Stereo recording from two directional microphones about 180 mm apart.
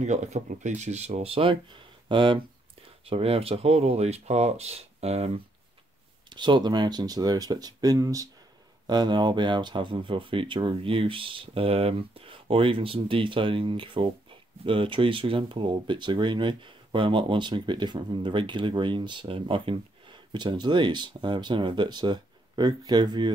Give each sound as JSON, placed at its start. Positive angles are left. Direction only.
{"t": 0.0, "sound": "speech", "side_deg": -40}